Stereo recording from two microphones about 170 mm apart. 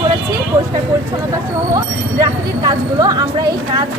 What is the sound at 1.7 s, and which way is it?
Speech, 20° right (ahead or behind).